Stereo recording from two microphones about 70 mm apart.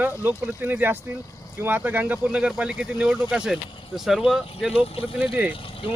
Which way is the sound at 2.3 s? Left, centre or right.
Centre.